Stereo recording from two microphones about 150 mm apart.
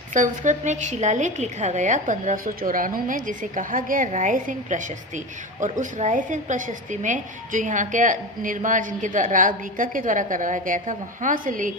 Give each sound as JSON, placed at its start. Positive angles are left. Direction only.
{"t": 0.1, "sound": "a woman's voice", "side_deg": -55}